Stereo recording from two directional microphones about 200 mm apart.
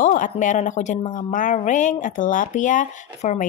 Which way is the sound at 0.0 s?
40° left (ahead or behind).